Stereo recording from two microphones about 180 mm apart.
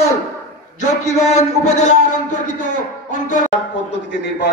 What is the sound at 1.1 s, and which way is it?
A man's voice, 40° left (ahead or behind).